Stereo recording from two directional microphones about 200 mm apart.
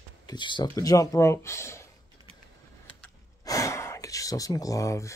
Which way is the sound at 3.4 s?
15° left (ahead or behind).